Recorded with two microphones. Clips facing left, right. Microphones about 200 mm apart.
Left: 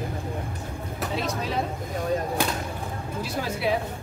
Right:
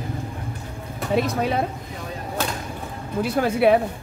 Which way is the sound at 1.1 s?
60° right (ahead or behind).